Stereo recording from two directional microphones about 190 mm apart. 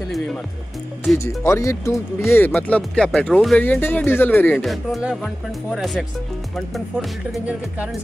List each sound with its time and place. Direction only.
1.1 s speech: 15° left (ahead or behind)
4.6 s speech: centre (ahead or behind)